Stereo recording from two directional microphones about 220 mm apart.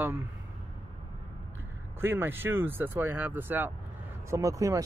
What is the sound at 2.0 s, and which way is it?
Speech, 10° right (ahead or behind).